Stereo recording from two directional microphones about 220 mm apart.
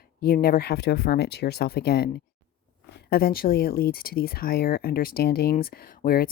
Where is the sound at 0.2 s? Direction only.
45° left (ahead or behind).